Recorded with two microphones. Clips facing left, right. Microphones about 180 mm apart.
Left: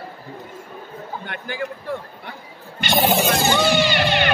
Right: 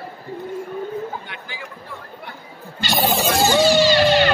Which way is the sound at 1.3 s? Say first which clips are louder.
Left 7 dB; 55° left (ahead or behind).